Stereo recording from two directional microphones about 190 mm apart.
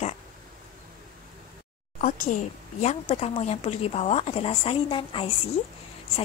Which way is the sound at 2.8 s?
35° left (ahead or behind).